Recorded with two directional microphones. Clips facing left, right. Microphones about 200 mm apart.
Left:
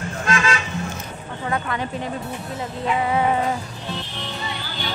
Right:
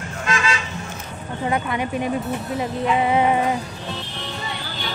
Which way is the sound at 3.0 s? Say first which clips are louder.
Right 2 dB; 20° right (ahead or behind).